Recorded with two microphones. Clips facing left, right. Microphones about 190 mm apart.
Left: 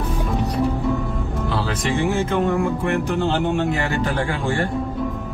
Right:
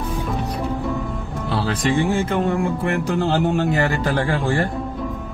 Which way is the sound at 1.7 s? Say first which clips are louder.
Right 4 dB; 35° right (ahead or behind).